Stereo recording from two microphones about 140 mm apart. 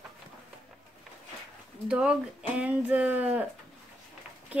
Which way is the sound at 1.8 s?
5° right (ahead or behind).